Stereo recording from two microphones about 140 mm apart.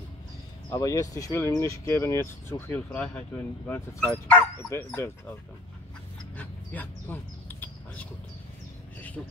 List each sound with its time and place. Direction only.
0.7 s speech: 25° left (ahead or behind)
6.3 s dog: 10° left (ahead or behind)